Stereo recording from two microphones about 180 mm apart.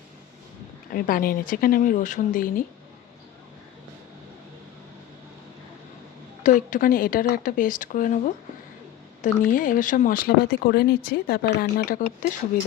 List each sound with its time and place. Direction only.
0.9 s speech: 50° left (ahead or behind)
6.4 s speech: 45° left (ahead or behind)